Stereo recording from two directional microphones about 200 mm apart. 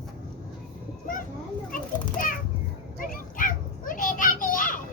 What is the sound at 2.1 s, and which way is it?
Children playing, 45° left (ahead or behind).